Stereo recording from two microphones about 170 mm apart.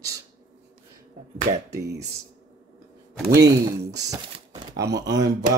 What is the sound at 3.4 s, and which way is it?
Speech, 20° right (ahead or behind).